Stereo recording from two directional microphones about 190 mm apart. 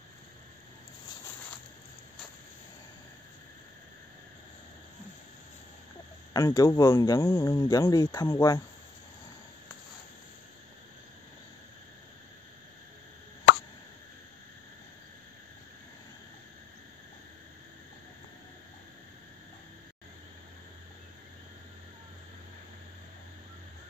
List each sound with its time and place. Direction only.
6.3 s speech: 20° left (ahead or behind)